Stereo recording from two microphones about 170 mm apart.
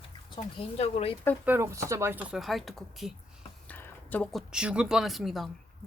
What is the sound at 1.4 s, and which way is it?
Speech, 15° right (ahead or behind).